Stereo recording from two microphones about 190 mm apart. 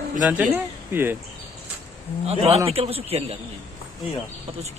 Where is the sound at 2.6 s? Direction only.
30° right (ahead or behind).